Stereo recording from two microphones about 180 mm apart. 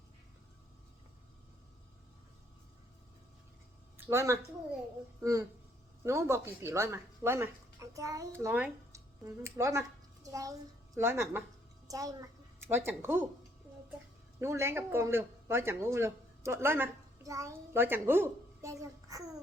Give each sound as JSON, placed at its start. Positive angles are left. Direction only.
{"t": 3.9, "sound": "a child's voice", "side_deg": -15}
{"t": 14.4, "sound": "speech", "side_deg": -15}